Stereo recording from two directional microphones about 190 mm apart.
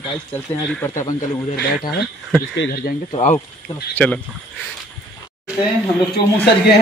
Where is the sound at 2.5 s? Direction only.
60° left (ahead or behind).